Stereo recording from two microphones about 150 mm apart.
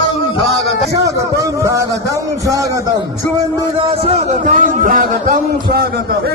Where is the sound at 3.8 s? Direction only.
45° right (ahead or behind); by 5.3 s 60° right (ahead or behind).